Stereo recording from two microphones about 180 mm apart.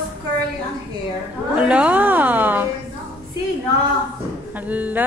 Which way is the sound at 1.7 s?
5° right (ahead or behind).